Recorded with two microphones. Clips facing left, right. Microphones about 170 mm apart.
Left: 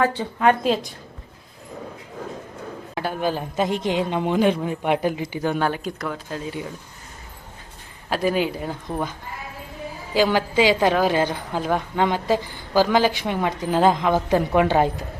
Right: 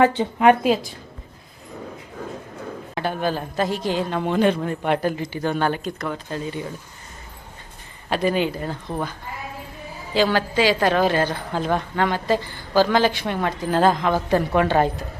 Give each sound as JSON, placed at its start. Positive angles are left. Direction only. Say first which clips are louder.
{"t": 0.0, "sound": "speech", "louder": "right 3 dB", "side_deg": -20}
{"t": 2.9, "sound": "a woman's voice", "louder": "even", "side_deg": 5}
{"t": 8.1, "sound": "a woman's voice", "louder": "right 1 dB", "side_deg": 5}
{"t": 10.2, "sound": "a woman's voice", "louder": "left 1 dB", "side_deg": 10}